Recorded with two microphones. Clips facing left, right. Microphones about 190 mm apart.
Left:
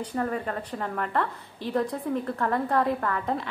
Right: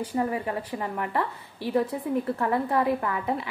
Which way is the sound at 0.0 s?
10° right (ahead or behind).